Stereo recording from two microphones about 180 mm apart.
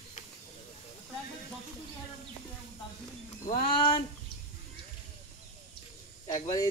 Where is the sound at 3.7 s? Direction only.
30° left (ahead or behind).